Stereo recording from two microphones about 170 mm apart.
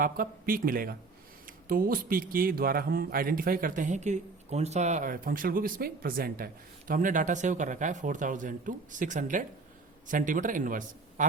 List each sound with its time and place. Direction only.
0.0 s speech: 55° right (ahead or behind)